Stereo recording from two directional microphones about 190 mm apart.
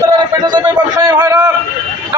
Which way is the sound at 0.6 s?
20° right (ahead or behind).